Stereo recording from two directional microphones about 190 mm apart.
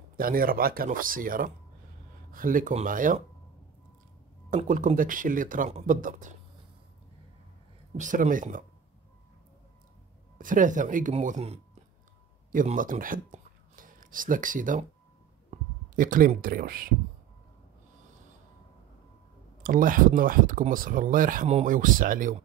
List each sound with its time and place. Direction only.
0.2 s speech: 50° right (ahead or behind)
4.6 s speech: 45° right (ahead or behind)
7.9 s speech: 40° right (ahead or behind)
10.4 s speech: 45° right (ahead or behind)
19.6 s speech: 45° right (ahead or behind)